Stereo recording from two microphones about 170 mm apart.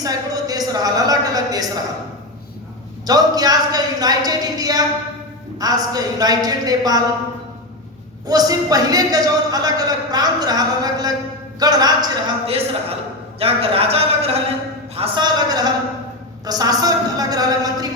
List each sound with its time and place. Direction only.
0.0 s a woman's voice: 20° right (ahead or behind)
3.1 s a man's voice: 20° right (ahead or behind)
8.3 s a man's voice: 20° right (ahead or behind)
12.5 s a man's voice: 35° right (ahead or behind)